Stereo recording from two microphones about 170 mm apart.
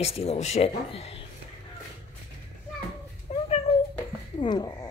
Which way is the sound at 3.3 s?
35° left (ahead or behind).